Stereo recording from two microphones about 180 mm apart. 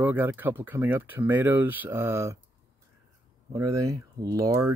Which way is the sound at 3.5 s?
15° right (ahead or behind).